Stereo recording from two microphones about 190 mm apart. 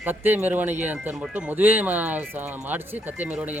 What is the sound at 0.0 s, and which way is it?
Speech, 10° right (ahead or behind).